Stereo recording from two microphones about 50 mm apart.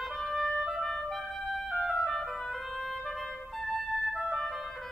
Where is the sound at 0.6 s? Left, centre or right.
Centre.